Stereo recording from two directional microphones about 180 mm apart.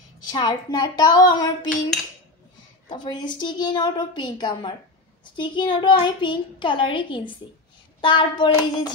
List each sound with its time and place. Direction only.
0.3 s a woman's voice: 20° left (ahead or behind)
2.9 s a woman's voice: 25° left (ahead or behind)